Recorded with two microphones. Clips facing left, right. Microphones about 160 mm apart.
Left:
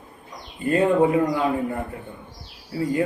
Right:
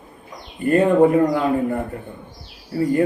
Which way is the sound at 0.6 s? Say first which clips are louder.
Right 4 dB; 50° right (ahead or behind).